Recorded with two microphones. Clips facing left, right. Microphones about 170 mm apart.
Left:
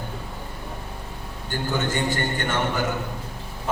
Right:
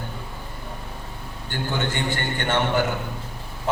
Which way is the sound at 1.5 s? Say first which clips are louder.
Left 1 dB; 45° left (ahead or behind).